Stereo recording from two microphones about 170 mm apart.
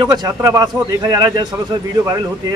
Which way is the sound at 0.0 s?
25° right (ahead or behind).